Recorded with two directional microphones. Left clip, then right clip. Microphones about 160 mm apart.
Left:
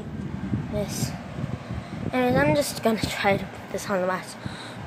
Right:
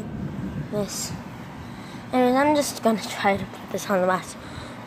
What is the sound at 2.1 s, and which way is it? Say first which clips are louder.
Speech: right 2 dB; 25° right (ahead or behind).